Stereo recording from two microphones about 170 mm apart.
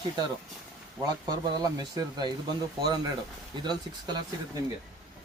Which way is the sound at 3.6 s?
25° right (ahead or behind).